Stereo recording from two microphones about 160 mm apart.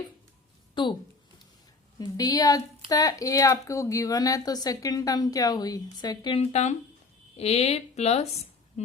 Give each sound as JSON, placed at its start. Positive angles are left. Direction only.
{"t": 0.8, "sound": "a woman's voice", "side_deg": 30}
{"t": 2.0, "sound": "a woman's voice", "side_deg": 25}
{"t": 6.3, "sound": "a woman's voice", "side_deg": 40}